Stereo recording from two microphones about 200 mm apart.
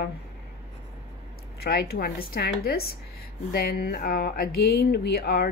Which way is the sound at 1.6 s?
55° left (ahead or behind).